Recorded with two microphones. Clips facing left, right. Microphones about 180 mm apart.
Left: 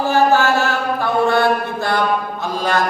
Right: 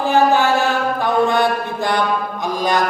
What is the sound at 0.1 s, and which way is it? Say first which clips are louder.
Mantra: right 1 dB; 15° right (ahead or behind).